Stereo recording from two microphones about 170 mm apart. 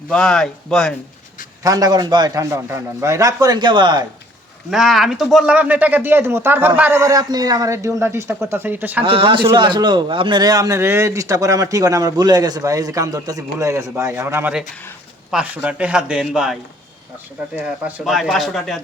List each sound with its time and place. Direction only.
0.1 s speech: 5° left (ahead or behind)
1.6 s a man's voice: 20° right (ahead or behind)
4.7 s speech: centre (ahead or behind)
9.0 s a man's voice: 30° right (ahead or behind); by 18.8 s centre (ahead or behind)